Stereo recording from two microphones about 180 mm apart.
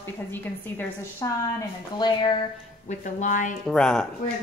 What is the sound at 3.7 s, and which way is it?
Speech, 5° left (ahead or behind).